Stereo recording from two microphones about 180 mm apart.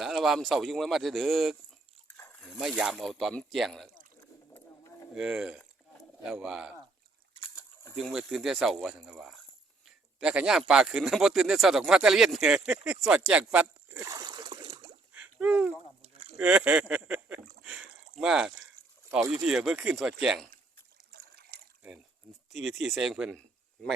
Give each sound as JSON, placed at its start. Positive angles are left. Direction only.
{"t": 0.0, "sound": "speech", "side_deg": 0}
{"t": 2.1, "sound": "a sound", "side_deg": 10}
{"t": 2.6, "sound": "speech", "side_deg": 0}
{"t": 5.1, "sound": "speech", "side_deg": -5}
{"t": 7.9, "sound": "speech", "side_deg": 0}
{"t": 14.0, "sound": "a sound", "side_deg": -20}
{"t": 15.1, "sound": "a sound", "side_deg": -5}
{"t": 16.0, "sound": "rowboat", "side_deg": -35}
{"t": 16.4, "sound": "speech", "side_deg": -5}
{"t": 17.6, "sound": "a sound", "side_deg": -5}
{"t": 19.5, "sound": "speech", "side_deg": -5}
{"t": 22.4, "sound": "speech", "side_deg": 0}